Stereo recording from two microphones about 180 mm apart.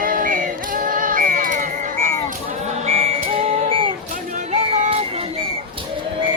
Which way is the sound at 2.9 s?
35° right (ahead or behind).